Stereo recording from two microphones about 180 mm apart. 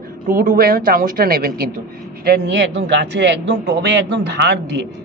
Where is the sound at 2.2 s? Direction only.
65° right (ahead or behind).